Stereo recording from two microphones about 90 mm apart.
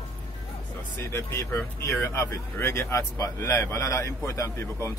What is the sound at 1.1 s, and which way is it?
A man's voice, 30° left (ahead or behind).